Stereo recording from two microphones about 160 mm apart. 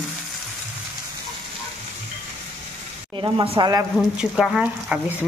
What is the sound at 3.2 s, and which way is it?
Speech, 30° right (ahead or behind).